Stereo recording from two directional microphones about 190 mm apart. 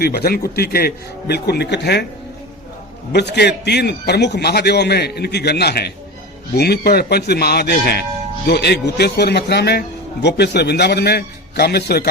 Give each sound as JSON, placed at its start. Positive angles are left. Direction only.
{"t": 0.0, "sound": "a man's voice", "side_deg": 55}
{"t": 3.1, "sound": "a man's voice", "side_deg": 60}